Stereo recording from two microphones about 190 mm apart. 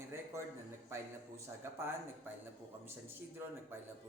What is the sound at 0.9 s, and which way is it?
A man's voice, 15° right (ahead or behind).